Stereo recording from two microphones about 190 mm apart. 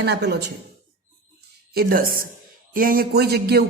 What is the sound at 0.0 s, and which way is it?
Speech, 60° right (ahead or behind).